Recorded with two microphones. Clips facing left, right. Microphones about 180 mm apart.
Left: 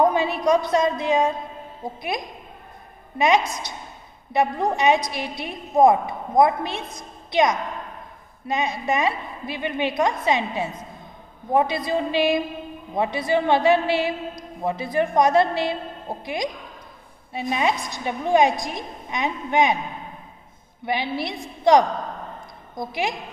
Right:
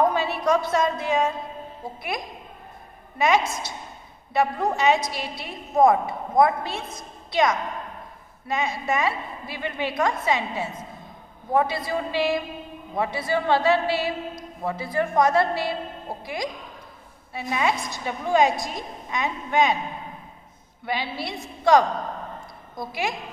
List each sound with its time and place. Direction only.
0.1 s a woman's voice: 15° left (ahead or behind)
3.2 s a woman's voice: 15° left (ahead or behind)
20.8 s a woman's voice: 15° left (ahead or behind)